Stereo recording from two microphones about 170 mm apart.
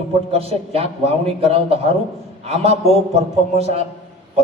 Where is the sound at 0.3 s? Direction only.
35° right (ahead or behind).